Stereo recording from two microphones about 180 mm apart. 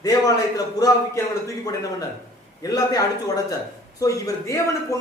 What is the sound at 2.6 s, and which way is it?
A man's voice, 20° left (ahead or behind).